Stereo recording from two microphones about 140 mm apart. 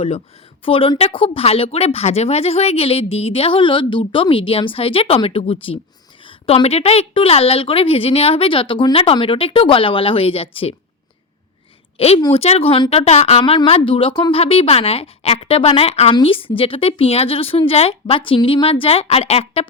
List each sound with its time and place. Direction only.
0.6 s a woman's voice: 40° left (ahead or behind)
11.9 s a woman's voice: 45° left (ahead or behind)
13.4 s speech: 40° left (ahead or behind)